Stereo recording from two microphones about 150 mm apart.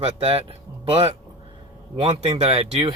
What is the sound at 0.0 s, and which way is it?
Speech, 40° right (ahead or behind).